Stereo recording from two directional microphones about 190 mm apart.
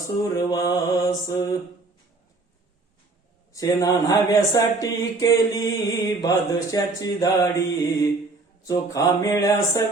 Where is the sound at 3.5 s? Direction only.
20° left (ahead or behind).